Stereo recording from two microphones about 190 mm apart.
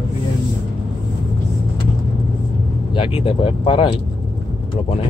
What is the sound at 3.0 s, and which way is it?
Speech, 30° left (ahead or behind).